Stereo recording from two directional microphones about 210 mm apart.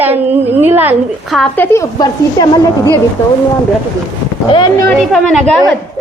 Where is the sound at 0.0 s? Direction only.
10° right (ahead or behind).